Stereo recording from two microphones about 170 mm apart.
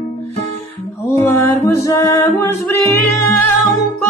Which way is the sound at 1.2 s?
15° left (ahead or behind).